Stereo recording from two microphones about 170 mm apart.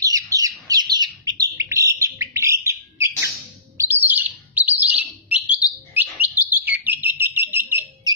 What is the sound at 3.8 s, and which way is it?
Chirp, 10° right (ahead or behind).